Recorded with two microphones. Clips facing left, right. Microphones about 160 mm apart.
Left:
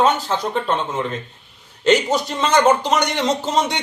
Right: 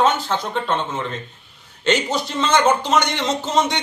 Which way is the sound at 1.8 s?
40° left (ahead or behind).